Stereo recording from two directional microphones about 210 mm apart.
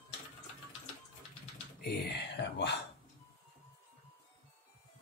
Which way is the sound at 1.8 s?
50° left (ahead or behind).